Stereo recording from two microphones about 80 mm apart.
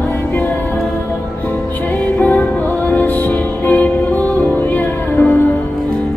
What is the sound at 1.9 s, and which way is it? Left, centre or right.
Music, centre.